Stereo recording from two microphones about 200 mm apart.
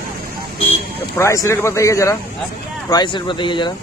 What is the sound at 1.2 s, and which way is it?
Speech, 15° left (ahead or behind).